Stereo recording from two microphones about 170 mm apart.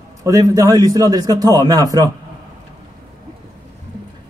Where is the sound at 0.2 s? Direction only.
20° right (ahead or behind).